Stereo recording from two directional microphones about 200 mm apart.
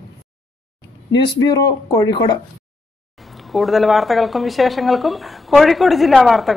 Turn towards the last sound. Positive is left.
turn(degrees=0)  # may be behind; listen again after turning